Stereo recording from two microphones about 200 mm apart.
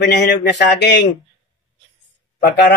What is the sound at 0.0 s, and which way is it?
Speech, 55° left (ahead or behind).